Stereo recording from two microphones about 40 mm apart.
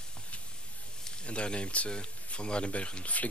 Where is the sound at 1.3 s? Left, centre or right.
Left.